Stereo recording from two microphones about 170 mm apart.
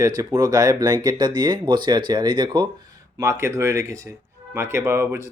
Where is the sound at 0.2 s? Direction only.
20° right (ahead or behind).